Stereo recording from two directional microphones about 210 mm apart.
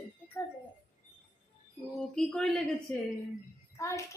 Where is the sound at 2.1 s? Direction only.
5° left (ahead or behind).